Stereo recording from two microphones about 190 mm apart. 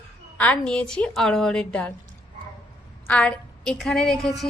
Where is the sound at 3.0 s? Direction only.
5° left (ahead or behind).